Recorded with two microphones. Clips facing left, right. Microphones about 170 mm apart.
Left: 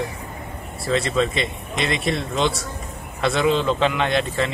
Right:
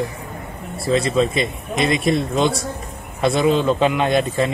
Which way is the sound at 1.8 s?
40° right (ahead or behind).